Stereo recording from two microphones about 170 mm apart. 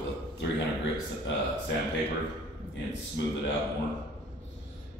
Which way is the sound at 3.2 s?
90° left.